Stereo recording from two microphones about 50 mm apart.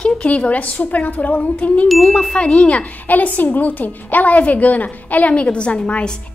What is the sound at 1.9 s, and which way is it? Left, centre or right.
Chime, centre.